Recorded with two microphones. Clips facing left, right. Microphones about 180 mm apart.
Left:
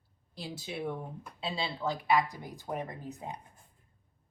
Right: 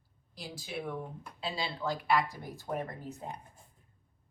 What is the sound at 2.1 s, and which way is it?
Speech, 15° left (ahead or behind).